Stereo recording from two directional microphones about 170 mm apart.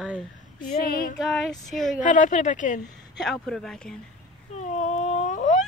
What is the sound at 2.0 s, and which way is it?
Speech, 50° left (ahead or behind).